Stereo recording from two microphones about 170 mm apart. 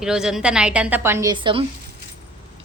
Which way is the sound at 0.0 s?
5° right (ahead or behind).